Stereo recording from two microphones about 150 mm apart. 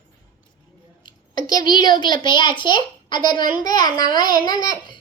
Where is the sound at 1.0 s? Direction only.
30° left (ahead or behind).